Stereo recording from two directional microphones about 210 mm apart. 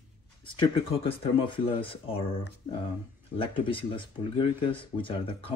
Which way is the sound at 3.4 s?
25° left (ahead or behind).